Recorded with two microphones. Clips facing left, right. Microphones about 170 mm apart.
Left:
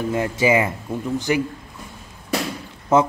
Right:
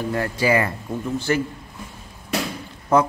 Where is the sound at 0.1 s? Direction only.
20° left (ahead or behind).